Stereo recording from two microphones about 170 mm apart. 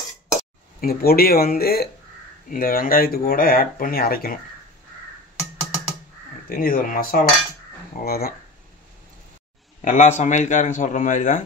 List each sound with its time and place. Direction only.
0.7 s speech: 60° left (ahead or behind)
6.5 s speech: 55° left (ahead or behind)
9.8 s a man's voice: 45° left (ahead or behind)